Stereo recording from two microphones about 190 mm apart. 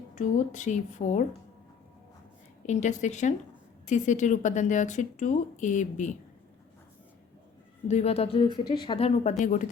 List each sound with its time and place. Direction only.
0.2 s a woman's voice: 40° left (ahead or behind)
2.6 s a woman's voice: 40° left (ahead or behind)
7.9 s speech: 35° left (ahead or behind)
9.4 s speech: 45° left (ahead or behind)